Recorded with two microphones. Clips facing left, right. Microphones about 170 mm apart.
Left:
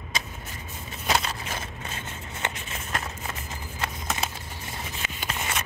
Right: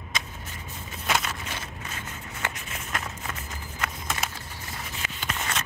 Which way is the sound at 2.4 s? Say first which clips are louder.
Left 1 dB; 20° left (ahead or behind).